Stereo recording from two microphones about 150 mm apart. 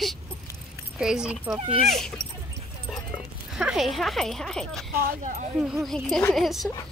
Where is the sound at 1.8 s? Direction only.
Centre (ahead or behind).